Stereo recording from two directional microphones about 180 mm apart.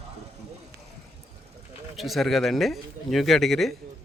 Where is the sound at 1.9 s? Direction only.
Centre (ahead or behind).